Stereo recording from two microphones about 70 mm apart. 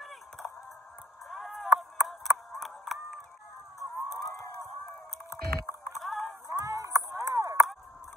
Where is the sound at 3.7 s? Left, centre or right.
Left.